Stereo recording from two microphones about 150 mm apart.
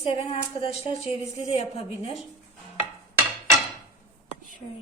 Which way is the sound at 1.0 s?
55° right (ahead or behind).